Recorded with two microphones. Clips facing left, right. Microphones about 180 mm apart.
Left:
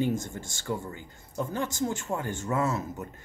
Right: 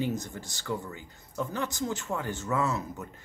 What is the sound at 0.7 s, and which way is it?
Speech, 25° left (ahead or behind).